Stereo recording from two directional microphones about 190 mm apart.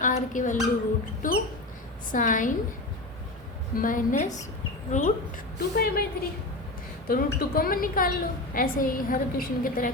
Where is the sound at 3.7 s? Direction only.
45° left (ahead or behind).